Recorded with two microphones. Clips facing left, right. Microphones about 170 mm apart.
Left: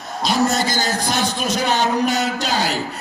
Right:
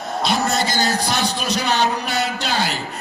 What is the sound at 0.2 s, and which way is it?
A man's voice, 40° left (ahead or behind).